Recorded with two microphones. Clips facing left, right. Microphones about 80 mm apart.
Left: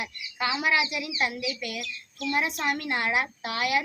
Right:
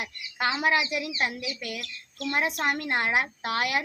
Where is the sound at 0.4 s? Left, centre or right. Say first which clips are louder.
Right 1 dB; right.